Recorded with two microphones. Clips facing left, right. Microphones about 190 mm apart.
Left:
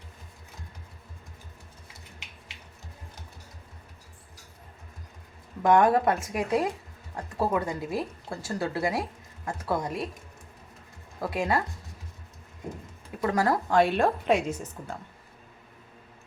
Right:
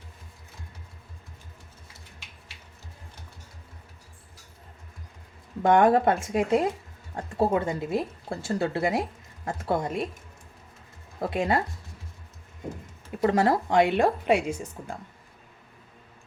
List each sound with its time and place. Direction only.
5.6 s speech: 25° right (ahead or behind)
11.2 s speech: 25° right (ahead or behind)
13.2 s a woman's voice: 25° right (ahead or behind)